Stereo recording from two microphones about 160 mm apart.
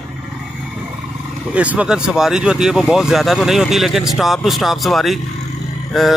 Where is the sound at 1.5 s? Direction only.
10° right (ahead or behind).